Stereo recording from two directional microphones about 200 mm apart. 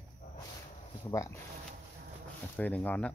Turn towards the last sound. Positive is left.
turn(degrees=5)  # may be behind; listen again after turning